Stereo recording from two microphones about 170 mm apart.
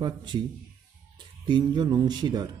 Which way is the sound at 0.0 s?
25° right (ahead or behind).